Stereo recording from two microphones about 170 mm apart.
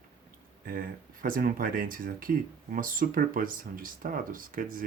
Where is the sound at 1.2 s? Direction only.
55° right (ahead or behind).